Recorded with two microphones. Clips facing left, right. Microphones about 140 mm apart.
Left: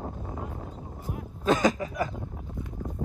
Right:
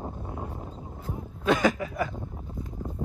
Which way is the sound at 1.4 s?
40° left (ahead or behind).